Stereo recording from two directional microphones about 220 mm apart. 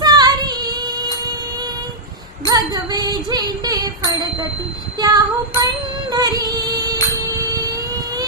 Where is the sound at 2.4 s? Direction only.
15° right (ahead or behind).